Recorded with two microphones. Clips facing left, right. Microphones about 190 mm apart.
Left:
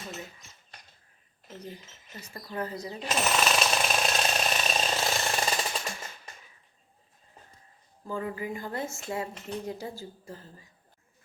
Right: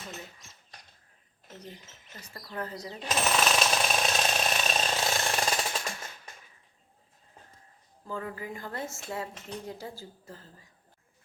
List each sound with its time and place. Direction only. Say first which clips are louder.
2.3 s speech: left 3 dB; 25° left (ahead or behind)
2.6 s jackhammer: left 2 dB; centre (ahead or behind)
8.0 s speech: left 3 dB; 15° left (ahead or behind)